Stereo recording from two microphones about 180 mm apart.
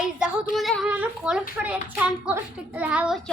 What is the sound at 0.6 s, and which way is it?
A child's voice, centre (ahead or behind).